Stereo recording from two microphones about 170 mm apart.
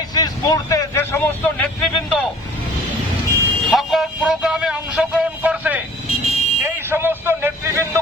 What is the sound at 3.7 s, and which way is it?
Speech, centre (ahead or behind).